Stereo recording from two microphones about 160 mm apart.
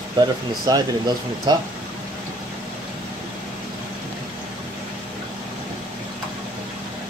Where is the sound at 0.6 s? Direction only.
25° right (ahead or behind).